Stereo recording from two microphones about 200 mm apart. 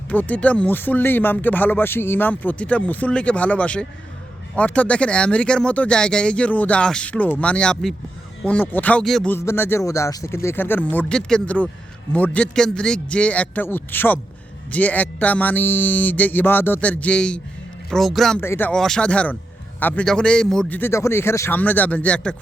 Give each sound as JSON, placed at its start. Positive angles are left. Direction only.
{"t": 0.1, "sound": "speech", "side_deg": 5}
{"t": 18.3, "sound": "speech", "side_deg": 10}